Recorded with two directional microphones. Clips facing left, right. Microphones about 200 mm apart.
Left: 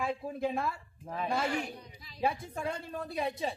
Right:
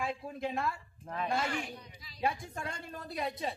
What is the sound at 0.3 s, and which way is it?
Speech, 5° left (ahead or behind).